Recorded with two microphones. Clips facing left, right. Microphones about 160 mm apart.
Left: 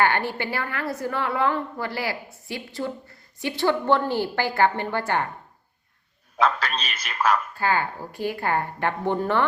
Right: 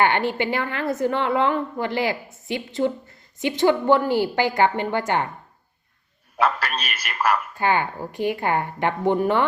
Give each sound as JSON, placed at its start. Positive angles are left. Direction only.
{"t": 0.0, "sound": "a woman's voice", "side_deg": -20}
{"t": 6.3, "sound": "a man's voice", "side_deg": -10}
{"t": 7.5, "sound": "a woman's voice", "side_deg": -20}